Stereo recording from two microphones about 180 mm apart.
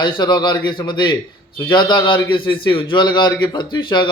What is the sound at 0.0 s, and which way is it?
Speech, 25° left (ahead or behind).